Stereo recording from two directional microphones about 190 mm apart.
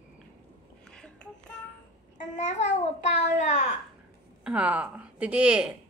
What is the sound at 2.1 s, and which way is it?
Babbling, 40° left (ahead or behind).